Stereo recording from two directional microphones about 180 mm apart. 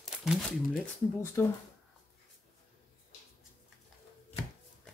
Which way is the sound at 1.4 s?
15° left (ahead or behind).